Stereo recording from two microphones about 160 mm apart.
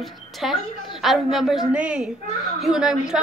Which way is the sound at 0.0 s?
Centre (ahead or behind).